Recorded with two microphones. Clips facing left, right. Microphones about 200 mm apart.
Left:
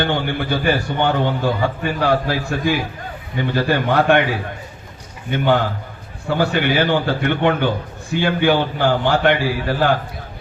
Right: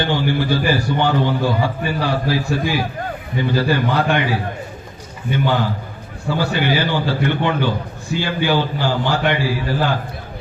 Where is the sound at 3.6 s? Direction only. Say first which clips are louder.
Left 2 dB; 55° left (ahead or behind).